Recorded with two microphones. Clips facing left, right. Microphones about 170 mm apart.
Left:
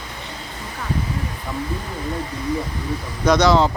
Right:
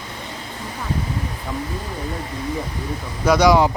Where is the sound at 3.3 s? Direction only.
10° right (ahead or behind).